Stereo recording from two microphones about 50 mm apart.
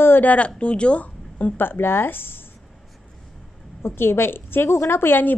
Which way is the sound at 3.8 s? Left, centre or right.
Left.